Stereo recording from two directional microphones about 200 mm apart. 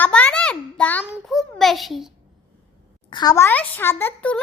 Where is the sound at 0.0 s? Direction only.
5° left (ahead or behind).